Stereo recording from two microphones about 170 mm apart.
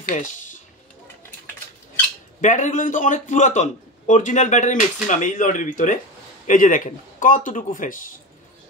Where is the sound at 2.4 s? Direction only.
45° left (ahead or behind).